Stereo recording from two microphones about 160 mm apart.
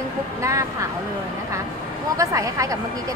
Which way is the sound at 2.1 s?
20° right (ahead or behind).